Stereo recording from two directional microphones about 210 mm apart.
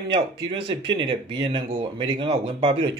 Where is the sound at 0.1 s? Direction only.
25° right (ahead or behind).